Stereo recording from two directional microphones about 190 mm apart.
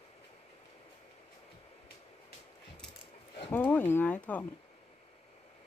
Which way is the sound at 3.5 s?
10° left (ahead or behind).